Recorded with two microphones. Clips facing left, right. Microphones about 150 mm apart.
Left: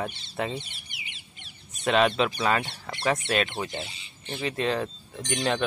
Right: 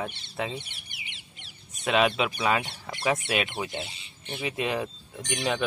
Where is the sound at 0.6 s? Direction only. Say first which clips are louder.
Left 1 dB; 70° right (ahead or behind).